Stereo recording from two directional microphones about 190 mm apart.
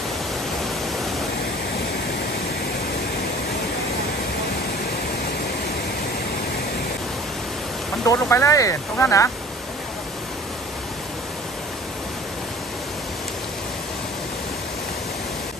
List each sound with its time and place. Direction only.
8.1 s speech: 15° left (ahead or behind)